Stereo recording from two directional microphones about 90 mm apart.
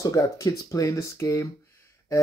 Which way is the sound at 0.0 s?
40° left (ahead or behind).